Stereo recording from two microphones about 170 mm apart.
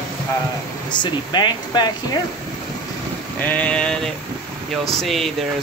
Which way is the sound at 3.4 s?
10° left (ahead or behind).